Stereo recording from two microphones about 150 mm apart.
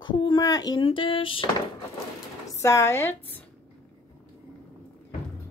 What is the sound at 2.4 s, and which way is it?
Speech, 20° left (ahead or behind).